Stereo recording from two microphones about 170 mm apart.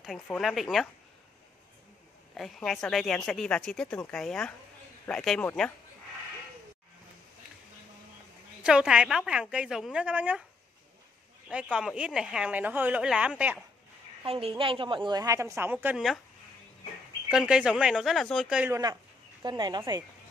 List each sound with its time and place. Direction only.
0.0 s a woman's voice: centre (ahead or behind)
2.3 s a woman's voice: centre (ahead or behind)
8.6 s a woman's voice: 5° right (ahead or behind)
11.4 s a woman's voice: 5° right (ahead or behind)
14.2 s a woman's voice: 35° right (ahead or behind); by 16.2 s 5° right (ahead or behind)
17.3 s a woman's voice: 5° right (ahead or behind)
18.7 s a woman's voice: 20° right (ahead or behind)